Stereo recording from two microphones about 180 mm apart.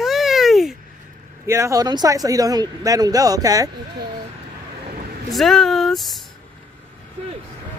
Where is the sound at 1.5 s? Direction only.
15° right (ahead or behind).